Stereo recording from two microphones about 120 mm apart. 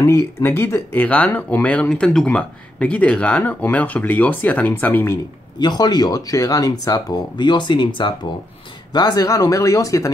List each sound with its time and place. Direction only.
0.0 s speech: 20° left (ahead or behind)
5.6 s speech: 35° left (ahead or behind)